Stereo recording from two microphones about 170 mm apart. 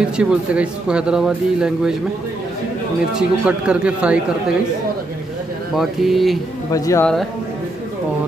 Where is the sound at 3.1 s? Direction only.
5° right (ahead or behind).